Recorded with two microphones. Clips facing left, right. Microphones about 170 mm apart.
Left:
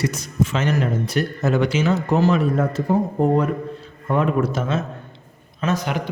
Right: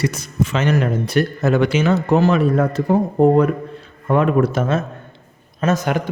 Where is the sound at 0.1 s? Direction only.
65° right (ahead or behind).